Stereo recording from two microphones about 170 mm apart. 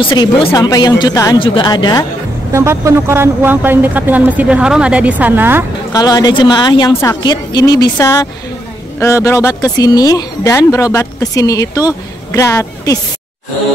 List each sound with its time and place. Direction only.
0.0 s speech: 30° left (ahead or behind)
2.5 s speech: 15° right (ahead or behind)
5.9 s speech: 20° left (ahead or behind)